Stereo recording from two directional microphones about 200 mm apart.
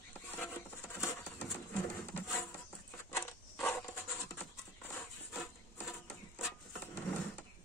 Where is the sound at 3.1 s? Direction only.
10° left (ahead or behind).